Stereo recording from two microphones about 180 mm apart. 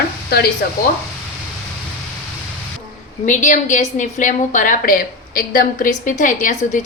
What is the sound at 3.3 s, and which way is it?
A woman's voice, 45° left (ahead or behind).